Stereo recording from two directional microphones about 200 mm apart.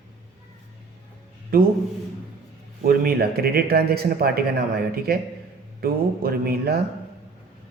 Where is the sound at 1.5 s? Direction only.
45° right (ahead or behind).